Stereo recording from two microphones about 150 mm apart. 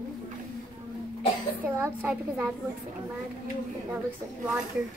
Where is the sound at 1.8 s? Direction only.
10° right (ahead or behind).